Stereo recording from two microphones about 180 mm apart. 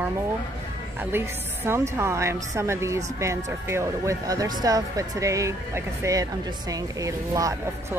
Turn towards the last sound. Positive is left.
turn(degrees=-15)  # may be behind; listen again after turning